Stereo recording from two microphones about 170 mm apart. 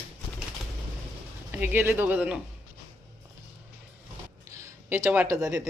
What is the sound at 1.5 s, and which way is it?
Speech, 10° right (ahead or behind).